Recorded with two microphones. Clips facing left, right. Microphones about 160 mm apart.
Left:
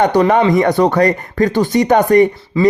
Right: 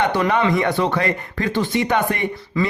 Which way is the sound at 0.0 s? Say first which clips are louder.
Left 7 dB; 45° left (ahead or behind).